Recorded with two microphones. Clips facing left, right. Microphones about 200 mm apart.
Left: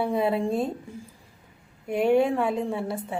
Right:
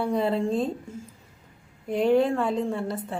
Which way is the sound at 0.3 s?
15° left (ahead or behind).